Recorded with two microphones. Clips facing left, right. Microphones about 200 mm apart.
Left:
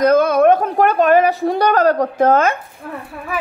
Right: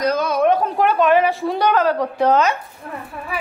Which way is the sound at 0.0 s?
55° left (ahead or behind).